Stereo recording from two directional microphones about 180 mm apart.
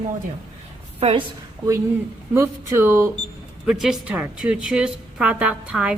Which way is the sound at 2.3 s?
15° right (ahead or behind).